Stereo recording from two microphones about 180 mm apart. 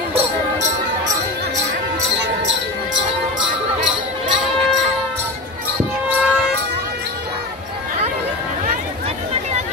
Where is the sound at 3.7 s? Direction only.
45° right (ahead or behind).